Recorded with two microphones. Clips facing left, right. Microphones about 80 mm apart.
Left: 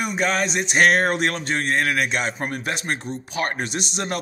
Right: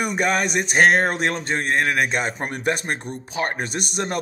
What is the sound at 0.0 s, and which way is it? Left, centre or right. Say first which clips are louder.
Music: right 1 dB; right.